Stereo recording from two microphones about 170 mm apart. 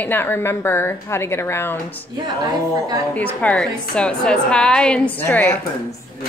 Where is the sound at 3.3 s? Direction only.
10° left (ahead or behind).